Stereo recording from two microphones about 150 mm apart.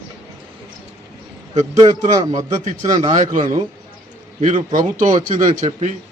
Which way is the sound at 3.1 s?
60° right (ahead or behind).